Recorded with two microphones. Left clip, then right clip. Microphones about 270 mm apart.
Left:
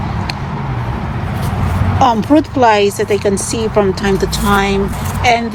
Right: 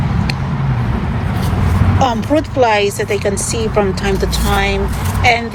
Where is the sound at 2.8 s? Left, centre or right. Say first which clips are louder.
Left 2 dB; centre.